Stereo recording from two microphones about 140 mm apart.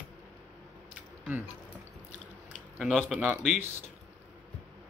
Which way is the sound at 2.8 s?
5° right (ahead or behind).